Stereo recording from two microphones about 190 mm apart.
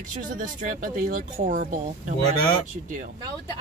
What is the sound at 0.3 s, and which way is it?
Speech, 45° right (ahead or behind).